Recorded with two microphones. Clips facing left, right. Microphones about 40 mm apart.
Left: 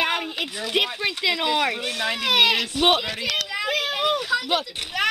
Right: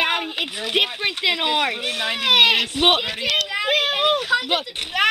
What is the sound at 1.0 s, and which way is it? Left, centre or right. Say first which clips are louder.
Speech: right 2 dB; right.